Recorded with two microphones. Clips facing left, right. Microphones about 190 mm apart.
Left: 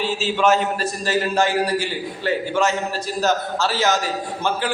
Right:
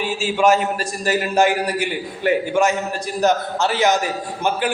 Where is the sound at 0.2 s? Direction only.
10° right (ahead or behind).